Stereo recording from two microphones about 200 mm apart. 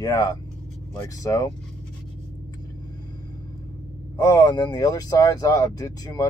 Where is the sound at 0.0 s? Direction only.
20° left (ahead or behind).